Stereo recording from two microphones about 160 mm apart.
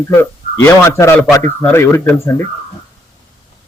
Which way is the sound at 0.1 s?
15° left (ahead or behind).